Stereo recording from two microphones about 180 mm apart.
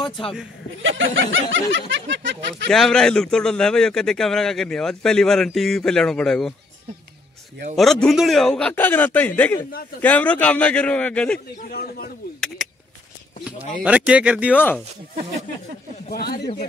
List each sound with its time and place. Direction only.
0.8 s speech: 90° right
2.7 s a man's voice: 5° left (ahead or behind)
7.7 s a man's voice: centre (ahead or behind)
11.3 s a man's voice: 60° left (ahead or behind)
13.8 s speech: 5° right (ahead or behind)
14.5 s a man's voice: 10° left (ahead or behind)
16.1 s a man's voice: 60° left (ahead or behind)